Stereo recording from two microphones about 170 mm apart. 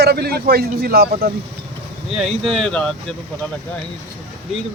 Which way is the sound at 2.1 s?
Centre (ahead or behind).